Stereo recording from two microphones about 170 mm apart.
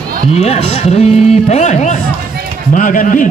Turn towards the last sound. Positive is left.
turn(degrees=50)  # may be behind; listen again after turning